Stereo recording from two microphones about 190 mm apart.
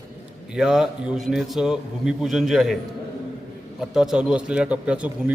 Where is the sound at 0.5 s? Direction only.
5° right (ahead or behind).